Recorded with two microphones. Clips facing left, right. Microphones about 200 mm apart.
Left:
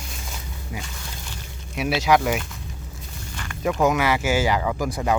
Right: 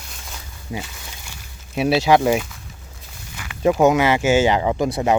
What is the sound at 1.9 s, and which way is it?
Speech, 30° right (ahead or behind).